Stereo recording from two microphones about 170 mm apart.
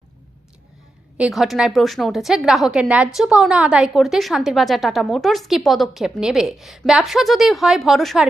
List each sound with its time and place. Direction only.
1.2 s a woman's voice: centre (ahead or behind)